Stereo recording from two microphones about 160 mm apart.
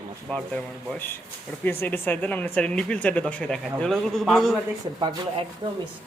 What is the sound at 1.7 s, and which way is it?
Speech, 10° left (ahead or behind).